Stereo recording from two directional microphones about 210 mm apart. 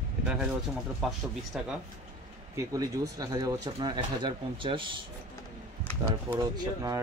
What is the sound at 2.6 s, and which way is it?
Speech, 15° right (ahead or behind).